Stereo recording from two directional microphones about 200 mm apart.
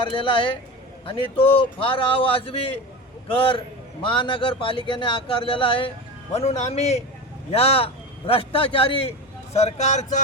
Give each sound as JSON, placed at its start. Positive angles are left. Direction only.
{"t": 0.0, "sound": "speech", "side_deg": 25}
{"t": 4.0, "sound": "speech", "side_deg": 25}